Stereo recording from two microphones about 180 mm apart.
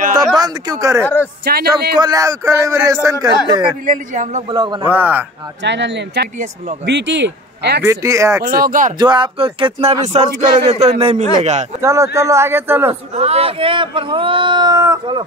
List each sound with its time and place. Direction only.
0.4 s speech: 20° right (ahead or behind)
1.0 s speech: 10° left (ahead or behind)
1.4 s a man's voice: 60° right (ahead or behind)
2.0 s a man's voice: 20° right (ahead or behind)
3.8 s a man's voice: 45° right (ahead or behind)
4.5 s speech: 25° right (ahead or behind)
4.8 s a man's voice: 10° right (ahead or behind)
5.6 s a man's voice: 80° right
7.8 s a man's voice: 15° right (ahead or behind)
8.5 s a man's voice: 55° right (ahead or behind)
8.9 s a man's voice: 25° right (ahead or behind)
11.8 s a man's voice: 15° right (ahead or behind)
13.1 s speech: 35° right (ahead or behind)